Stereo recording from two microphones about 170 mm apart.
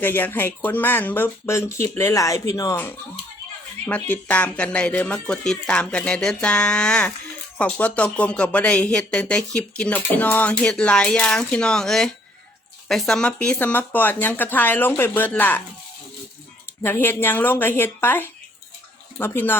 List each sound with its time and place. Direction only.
0.0 s speech: 10° left (ahead or behind)
16.8 s speech: 10° left (ahead or behind)